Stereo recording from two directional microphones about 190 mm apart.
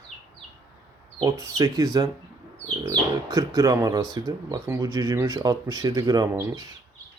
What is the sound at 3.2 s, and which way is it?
Speech, 20° right (ahead or behind).